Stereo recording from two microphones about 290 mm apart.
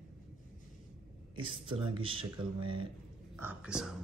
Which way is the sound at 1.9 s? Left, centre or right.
Centre.